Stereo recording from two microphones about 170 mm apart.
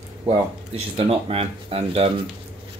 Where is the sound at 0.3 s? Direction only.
35° right (ahead or behind).